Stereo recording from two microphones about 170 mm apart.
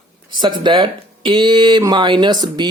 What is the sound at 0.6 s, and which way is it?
Speech, 30° right (ahead or behind).